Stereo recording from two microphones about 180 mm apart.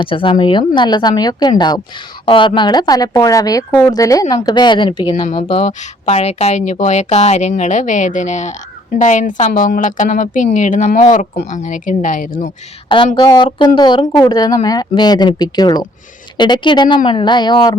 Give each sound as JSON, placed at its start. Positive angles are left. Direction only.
{"t": 0.0, "sound": "a woman's voice", "side_deg": 30}
{"t": 13.1, "sound": "speech", "side_deg": 25}